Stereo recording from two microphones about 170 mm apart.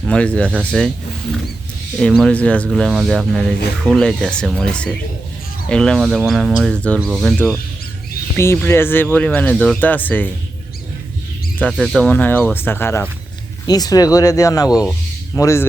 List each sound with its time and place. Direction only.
0.0 s speech: 5° left (ahead or behind)
2.0 s speech: 5° left (ahead or behind)
8.4 s speech: 15° left (ahead or behind)
11.6 s speech: 5° left (ahead or behind); by 14.7 s 20° left (ahead or behind)
14.7 s speech: 5° right (ahead or behind)
15.4 s speech: 15° left (ahead or behind)